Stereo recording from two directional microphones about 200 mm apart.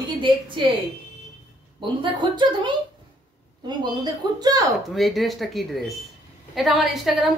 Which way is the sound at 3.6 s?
20° right (ahead or behind).